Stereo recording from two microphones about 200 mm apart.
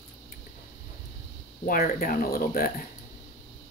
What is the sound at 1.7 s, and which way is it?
Speech, 45° left (ahead or behind).